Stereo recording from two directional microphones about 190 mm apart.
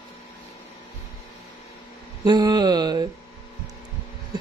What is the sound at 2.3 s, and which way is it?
Mantra, 20° right (ahead or behind).